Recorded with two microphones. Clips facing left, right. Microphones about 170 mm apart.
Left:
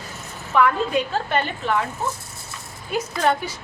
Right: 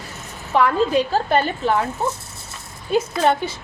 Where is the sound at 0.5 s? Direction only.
35° right (ahead or behind).